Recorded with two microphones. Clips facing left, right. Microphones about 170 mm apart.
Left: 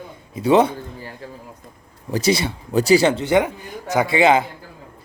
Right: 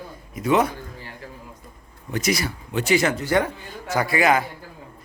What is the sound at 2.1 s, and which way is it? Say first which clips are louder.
A man's voice: left 5 dB; 30° left (ahead or behind).